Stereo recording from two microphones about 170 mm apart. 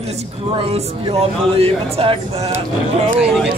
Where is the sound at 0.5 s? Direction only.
30° right (ahead or behind).